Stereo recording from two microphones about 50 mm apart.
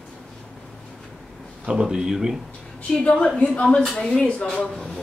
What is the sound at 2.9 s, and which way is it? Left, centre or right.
A woman's voice, centre.